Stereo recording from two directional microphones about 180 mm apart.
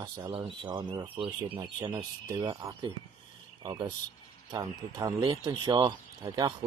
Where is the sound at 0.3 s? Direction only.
25° right (ahead or behind).